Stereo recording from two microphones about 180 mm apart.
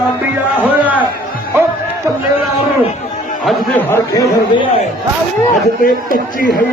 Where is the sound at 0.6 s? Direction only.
10° right (ahead or behind).